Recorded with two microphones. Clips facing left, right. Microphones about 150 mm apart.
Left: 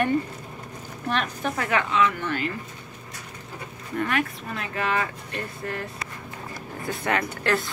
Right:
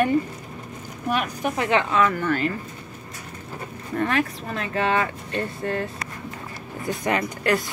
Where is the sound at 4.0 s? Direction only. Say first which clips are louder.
Right 3 dB; 35° right (ahead or behind).